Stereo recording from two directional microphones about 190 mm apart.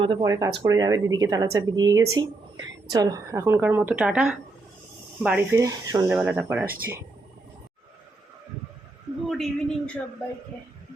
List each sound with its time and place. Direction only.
0.0 s a woman's voice: 25° right (ahead or behind)
6.1 s a woman's voice: 10° right (ahead or behind)
9.3 s a man's voice: centre (ahead or behind)